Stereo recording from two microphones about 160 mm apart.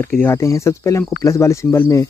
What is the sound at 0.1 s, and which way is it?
Speech, 15° left (ahead or behind).